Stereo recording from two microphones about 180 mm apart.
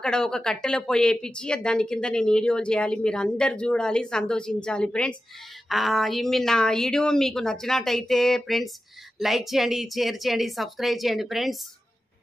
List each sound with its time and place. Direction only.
0.0 s speech: 5° left (ahead or behind)